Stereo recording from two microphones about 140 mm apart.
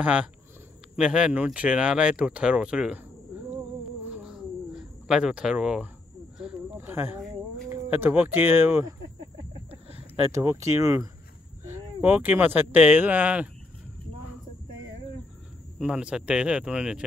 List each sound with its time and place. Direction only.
0.0 s speech: 10° right (ahead or behind)
4.0 s cat: 5° right (ahead or behind)
6.3 s a sound: 5° right (ahead or behind)
7.7 s speech: 15° right (ahead or behind)
9.7 s a sound: 45° right (ahead or behind)
10.3 s speech: 20° right (ahead or behind)
15.8 s speech: 5° right (ahead or behind)